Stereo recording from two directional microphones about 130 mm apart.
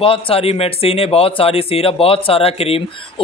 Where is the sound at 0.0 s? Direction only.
45° left (ahead or behind).